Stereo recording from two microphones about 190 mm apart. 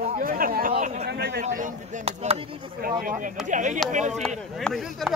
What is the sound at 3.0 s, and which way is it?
Speech, 45° right (ahead or behind).